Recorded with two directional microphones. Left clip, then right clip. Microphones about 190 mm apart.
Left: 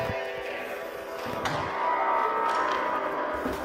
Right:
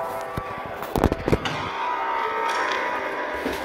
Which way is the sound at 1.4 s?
30° left (ahead or behind).